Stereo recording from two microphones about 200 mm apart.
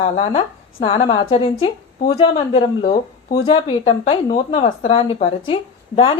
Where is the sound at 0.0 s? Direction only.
30° left (ahead or behind).